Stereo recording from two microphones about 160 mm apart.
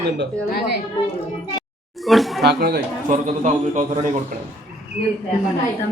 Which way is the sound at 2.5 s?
80° right.